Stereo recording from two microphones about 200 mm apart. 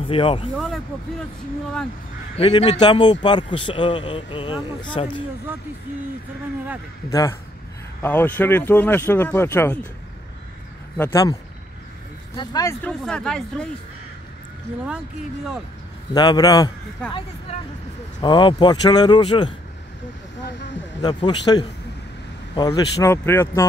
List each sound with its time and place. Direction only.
0.0 s speech: 25° left (ahead or behind)
0.6 s speech: centre (ahead or behind)
2.3 s a man's voice: 30° left (ahead or behind)
7.1 s speech: 15° left (ahead or behind)
11.0 s speech: 15° left (ahead or behind)
12.4 s a man's voice: 20° left (ahead or behind)
12.8 s speech: 5° left (ahead or behind)
16.1 s a man's voice: 20° left (ahead or behind)
18.2 s a man's voice: 25° left (ahead or behind)
21.0 s a man's voice: 20° left (ahead or behind)